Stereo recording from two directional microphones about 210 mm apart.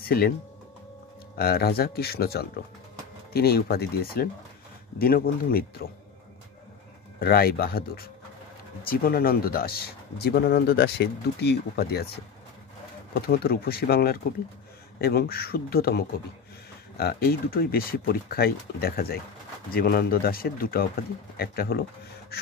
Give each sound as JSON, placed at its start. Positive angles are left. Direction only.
{"t": 0.0, "sound": "speech", "side_deg": 45}
{"t": 1.3, "sound": "speech", "side_deg": 45}
{"t": 7.2, "sound": "speech", "side_deg": 45}
{"t": 13.1, "sound": "speech", "side_deg": 45}